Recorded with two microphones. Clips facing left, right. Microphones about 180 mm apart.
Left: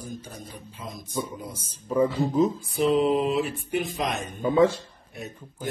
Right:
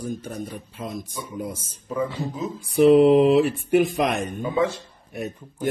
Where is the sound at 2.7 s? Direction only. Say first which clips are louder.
Right 8 dB; 65° right (ahead or behind).